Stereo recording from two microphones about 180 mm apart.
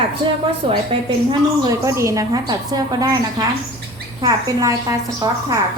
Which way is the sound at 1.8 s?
15° right (ahead or behind).